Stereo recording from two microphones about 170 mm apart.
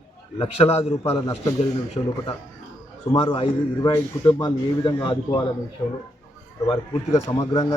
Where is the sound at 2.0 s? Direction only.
25° left (ahead or behind).